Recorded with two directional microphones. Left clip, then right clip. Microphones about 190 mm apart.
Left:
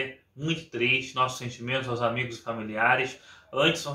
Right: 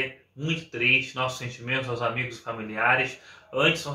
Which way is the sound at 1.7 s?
10° left (ahead or behind).